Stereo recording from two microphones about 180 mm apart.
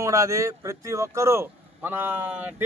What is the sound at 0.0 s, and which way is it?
Speech, 15° right (ahead or behind).